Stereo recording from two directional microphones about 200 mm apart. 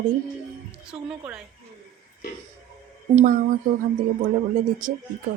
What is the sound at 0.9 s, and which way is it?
Speech, 5° right (ahead or behind).